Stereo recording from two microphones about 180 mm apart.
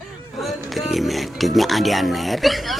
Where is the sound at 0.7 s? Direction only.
Centre (ahead or behind).